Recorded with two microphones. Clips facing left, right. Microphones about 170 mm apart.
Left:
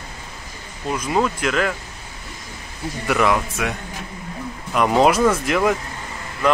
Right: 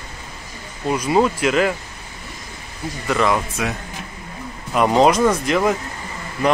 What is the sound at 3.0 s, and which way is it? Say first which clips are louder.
Speech: even; 10° left (ahead or behind).